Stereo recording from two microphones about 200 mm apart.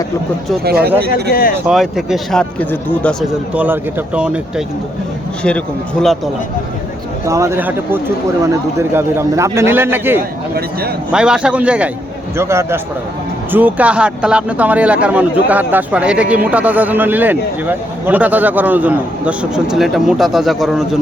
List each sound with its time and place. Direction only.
0.6 s speech: 50° right (ahead or behind)
1.3 s speech: 45° left (ahead or behind)
1.6 s speech: centre (ahead or behind)
3.5 s speech: 10° right (ahead or behind)
5.4 s speech: 5° left (ahead or behind)
7.3 s speech: 15° right (ahead or behind)